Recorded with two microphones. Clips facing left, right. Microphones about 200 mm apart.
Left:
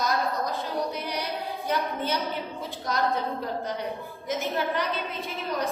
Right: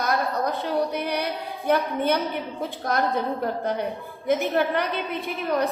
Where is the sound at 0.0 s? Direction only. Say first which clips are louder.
Right 3 dB; 60° right (ahead or behind).